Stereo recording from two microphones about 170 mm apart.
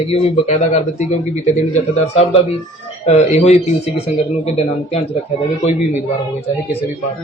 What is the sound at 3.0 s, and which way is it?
A man's voice, 40° left (ahead or behind).